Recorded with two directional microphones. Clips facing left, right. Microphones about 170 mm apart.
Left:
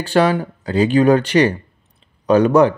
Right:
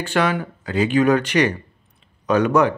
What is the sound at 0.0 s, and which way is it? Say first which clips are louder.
Speech: left 5 dB; 30° left (ahead or behind).